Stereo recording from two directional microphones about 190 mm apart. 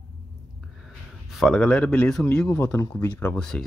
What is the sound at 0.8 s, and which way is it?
A man's voice, centre (ahead or behind).